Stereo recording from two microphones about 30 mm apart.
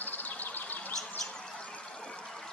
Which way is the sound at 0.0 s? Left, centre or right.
Left.